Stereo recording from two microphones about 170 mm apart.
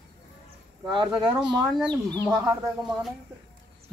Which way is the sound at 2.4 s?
10° right (ahead or behind).